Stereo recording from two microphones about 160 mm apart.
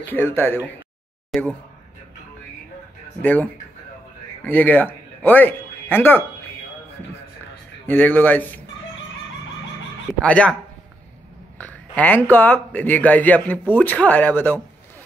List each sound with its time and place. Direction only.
0.0 s speech: 15° left (ahead or behind)
1.3 s speech: centre (ahead or behind)
3.2 s speech: 10° left (ahead or behind)
4.5 s speech: 10° left (ahead or behind)
7.8 s speech: 10° left (ahead or behind)
10.2 s speech: 10° left (ahead or behind)
11.5 s speech: 10° left (ahead or behind)